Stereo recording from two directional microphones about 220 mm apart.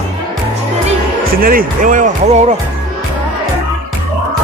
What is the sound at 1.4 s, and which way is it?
Speech, 40° right (ahead or behind).